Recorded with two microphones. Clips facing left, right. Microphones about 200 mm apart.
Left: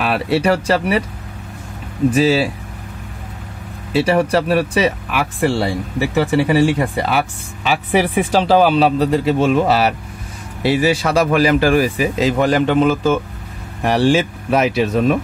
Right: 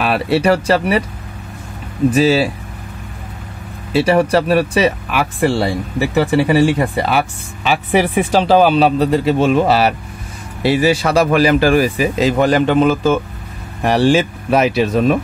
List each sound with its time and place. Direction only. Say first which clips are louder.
0.0 s speech: right 2 dB; 40° right (ahead or behind)
2.1 s speech: right 2 dB; 40° right (ahead or behind)
3.9 s speech: right 2 dB; 40° right (ahead or behind)
6.1 s speech: right 2 dB; 40° right (ahead or behind)